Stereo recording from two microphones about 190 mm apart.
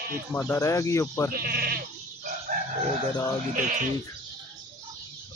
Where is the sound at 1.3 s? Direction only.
55° right (ahead or behind).